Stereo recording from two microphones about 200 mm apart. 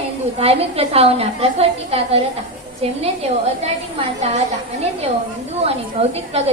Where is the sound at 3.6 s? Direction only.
35° right (ahead or behind).